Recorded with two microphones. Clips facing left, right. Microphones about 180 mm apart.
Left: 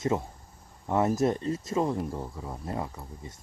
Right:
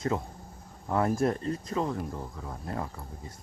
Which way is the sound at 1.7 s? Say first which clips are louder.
Left 4 dB; 20° left (ahead or behind).